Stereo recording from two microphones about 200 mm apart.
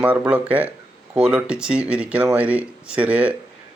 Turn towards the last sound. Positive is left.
turn(degrees=-5)  # may be behind; listen again after turning